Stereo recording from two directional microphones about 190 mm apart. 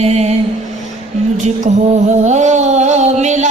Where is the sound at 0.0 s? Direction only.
35° right (ahead or behind).